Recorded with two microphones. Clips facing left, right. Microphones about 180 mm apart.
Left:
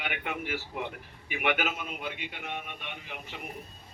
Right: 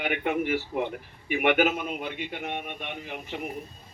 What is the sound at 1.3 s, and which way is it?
A man's voice, 45° right (ahead or behind).